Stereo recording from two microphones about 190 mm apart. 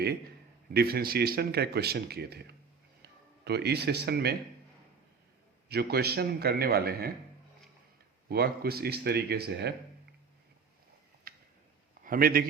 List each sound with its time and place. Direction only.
0.7 s a man's voice: 55° right (ahead or behind)
5.6 s speech: 55° right (ahead or behind)
8.3 s speech: 55° right (ahead or behind)
12.0 s a man's voice: 50° right (ahead or behind)